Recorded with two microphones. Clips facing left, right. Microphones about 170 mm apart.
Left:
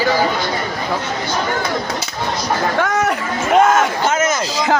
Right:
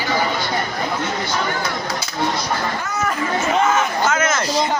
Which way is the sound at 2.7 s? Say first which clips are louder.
Left 8 dB; 90° left.